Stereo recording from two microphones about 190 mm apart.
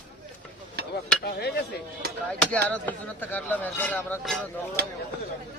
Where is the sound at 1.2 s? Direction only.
55° left (ahead or behind).